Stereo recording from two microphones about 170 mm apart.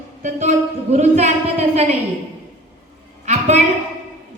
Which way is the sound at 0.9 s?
40° right (ahead or behind).